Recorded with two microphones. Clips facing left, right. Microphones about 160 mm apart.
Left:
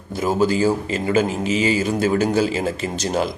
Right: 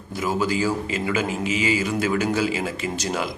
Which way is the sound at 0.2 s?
30° left (ahead or behind).